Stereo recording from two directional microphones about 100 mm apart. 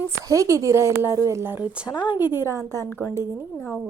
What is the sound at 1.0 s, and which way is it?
Speech, 35° left (ahead or behind).